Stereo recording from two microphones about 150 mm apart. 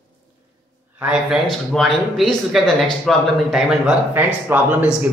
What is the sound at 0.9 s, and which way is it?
Speech, 10° right (ahead or behind).